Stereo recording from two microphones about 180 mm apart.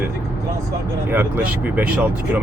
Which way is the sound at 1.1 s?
10° right (ahead or behind).